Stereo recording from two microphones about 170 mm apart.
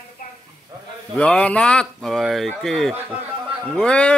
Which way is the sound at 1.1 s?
5° left (ahead or behind).